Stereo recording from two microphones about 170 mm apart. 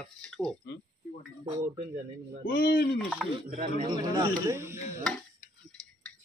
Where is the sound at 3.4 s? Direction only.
55° right (ahead or behind).